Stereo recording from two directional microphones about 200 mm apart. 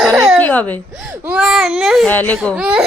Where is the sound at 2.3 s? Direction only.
5° right (ahead or behind).